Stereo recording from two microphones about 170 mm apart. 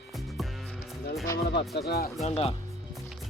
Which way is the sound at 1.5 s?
75° left (ahead or behind).